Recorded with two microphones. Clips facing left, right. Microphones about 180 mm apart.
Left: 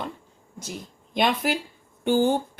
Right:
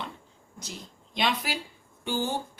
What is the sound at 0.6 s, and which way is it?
Speech, 50° left (ahead or behind).